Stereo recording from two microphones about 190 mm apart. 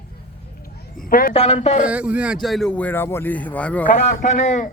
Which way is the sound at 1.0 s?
50° left (ahead or behind).